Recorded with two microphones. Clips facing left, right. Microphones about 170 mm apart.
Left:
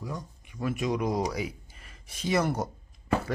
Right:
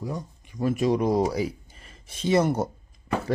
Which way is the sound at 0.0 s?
30° right (ahead or behind).